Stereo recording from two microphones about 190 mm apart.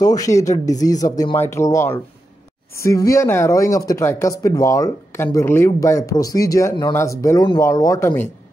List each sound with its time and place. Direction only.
0.0 s speech: 20° left (ahead or behind)